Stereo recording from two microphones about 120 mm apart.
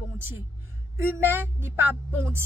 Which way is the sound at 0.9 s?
20° right (ahead or behind).